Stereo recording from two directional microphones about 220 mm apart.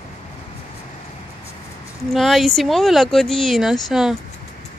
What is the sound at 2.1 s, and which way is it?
Speech, centre (ahead or behind).